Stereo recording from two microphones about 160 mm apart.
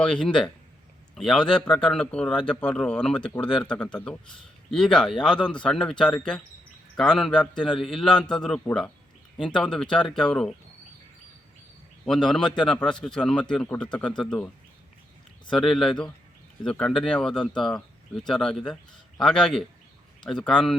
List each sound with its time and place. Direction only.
0.0 s a man's voice: 5° left (ahead or behind)
12.0 s a man's voice: centre (ahead or behind)